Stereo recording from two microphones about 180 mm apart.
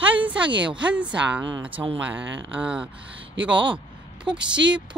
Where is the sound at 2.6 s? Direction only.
5° right (ahead or behind).